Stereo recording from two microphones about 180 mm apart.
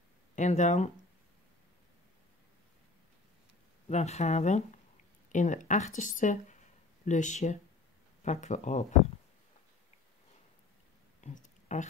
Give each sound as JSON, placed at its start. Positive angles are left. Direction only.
{"t": 0.4, "sound": "speech", "side_deg": 40}
{"t": 3.9, "sound": "speech", "side_deg": 40}
{"t": 11.1, "sound": "a sound", "side_deg": 40}